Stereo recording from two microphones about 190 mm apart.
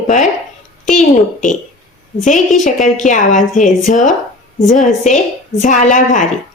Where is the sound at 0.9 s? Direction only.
40° left (ahead or behind).